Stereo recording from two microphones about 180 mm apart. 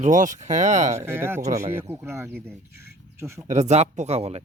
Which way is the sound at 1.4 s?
40° right (ahead or behind).